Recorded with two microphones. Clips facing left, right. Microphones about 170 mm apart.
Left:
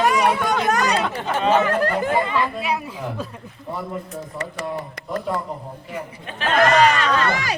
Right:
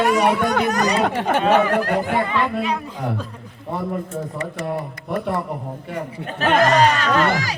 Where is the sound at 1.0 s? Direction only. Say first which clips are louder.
Right 3 dB; 60° right (ahead or behind).